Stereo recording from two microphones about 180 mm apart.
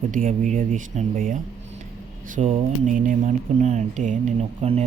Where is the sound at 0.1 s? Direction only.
45° right (ahead or behind).